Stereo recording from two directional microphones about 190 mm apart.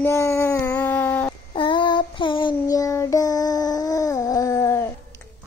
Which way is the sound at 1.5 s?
25° left (ahead or behind).